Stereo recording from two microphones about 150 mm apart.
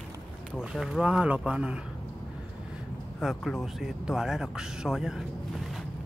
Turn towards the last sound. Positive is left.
turn(degrees=-5)  # may be behind; listen again after turning